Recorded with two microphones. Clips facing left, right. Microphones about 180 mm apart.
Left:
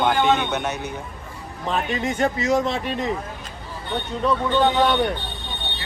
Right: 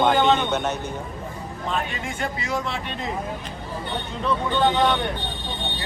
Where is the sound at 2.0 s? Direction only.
40° left (ahead or behind).